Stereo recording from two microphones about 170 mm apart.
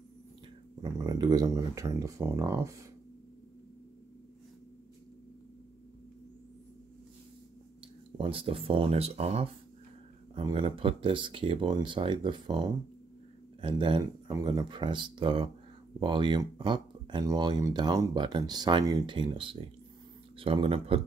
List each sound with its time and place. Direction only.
0.9 s speech: 25° right (ahead or behind)
8.2 s speech: 30° right (ahead or behind)